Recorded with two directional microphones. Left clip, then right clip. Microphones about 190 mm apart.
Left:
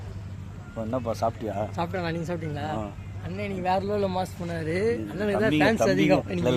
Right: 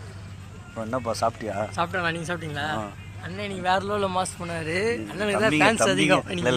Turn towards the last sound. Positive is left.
turn(degrees=0)  # may be behind; listen again after turning